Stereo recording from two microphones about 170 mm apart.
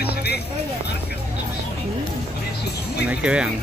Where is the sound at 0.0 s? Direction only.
70° left (ahead or behind).